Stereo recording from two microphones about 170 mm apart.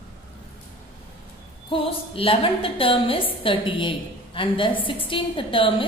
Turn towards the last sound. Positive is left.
turn(degrees=30)  # may be behind; listen again after turning